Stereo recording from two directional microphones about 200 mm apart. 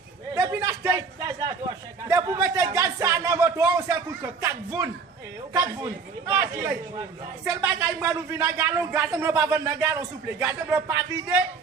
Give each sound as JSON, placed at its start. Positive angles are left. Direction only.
{"t": 0.3, "sound": "a sound", "side_deg": -20}
{"t": 5.5, "sound": "a man's voice", "side_deg": -15}
{"t": 7.9, "sound": "a man's voice", "side_deg": -15}